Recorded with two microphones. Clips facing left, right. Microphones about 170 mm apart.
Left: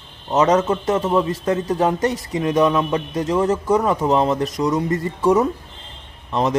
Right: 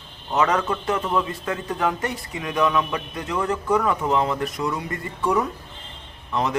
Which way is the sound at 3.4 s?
20° left (ahead or behind).